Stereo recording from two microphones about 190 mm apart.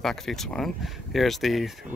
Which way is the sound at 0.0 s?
Centre (ahead or behind).